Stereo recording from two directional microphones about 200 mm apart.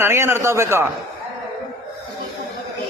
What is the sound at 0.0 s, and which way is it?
Speech, 10° right (ahead or behind).